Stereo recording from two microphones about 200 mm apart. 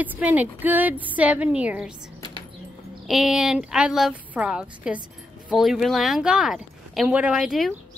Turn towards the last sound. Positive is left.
turn(degrees=0)  # may be behind; listen again after turning